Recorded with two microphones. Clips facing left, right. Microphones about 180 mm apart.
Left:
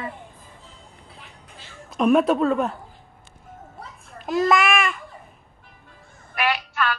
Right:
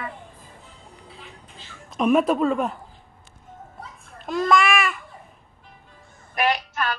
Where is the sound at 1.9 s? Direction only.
Centre (ahead or behind).